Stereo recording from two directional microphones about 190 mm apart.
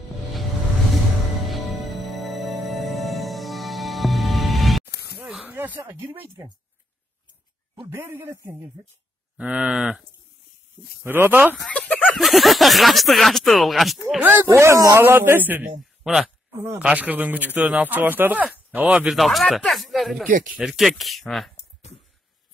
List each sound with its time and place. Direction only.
1.5 s music: centre (ahead or behind)
4.9 s a sound: 55° left (ahead or behind)
5.2 s speech: 10° right (ahead or behind)
7.9 s speech: 10° right (ahead or behind)
9.4 s speech: 5° right (ahead or behind)
11.5 s speech: 5° left (ahead or behind)
14.0 s speech: 10° right (ahead or behind)
20.2 s speech: 45° right (ahead or behind)
20.5 s speech: centre (ahead or behind)